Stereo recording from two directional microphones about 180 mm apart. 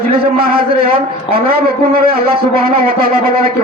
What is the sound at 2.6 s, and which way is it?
Speech, 55° right (ahead or behind).